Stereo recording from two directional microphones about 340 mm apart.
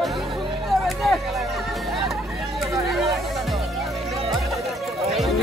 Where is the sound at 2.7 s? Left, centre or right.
Centre.